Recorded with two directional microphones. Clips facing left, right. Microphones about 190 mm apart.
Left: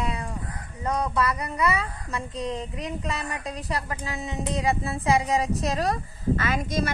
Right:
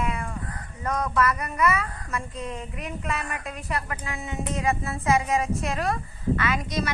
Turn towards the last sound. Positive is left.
turn(degrees=50)  # may be behind; listen again after turning